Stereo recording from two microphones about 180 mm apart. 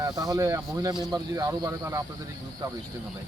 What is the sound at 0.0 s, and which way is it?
Speech, 20° right (ahead or behind).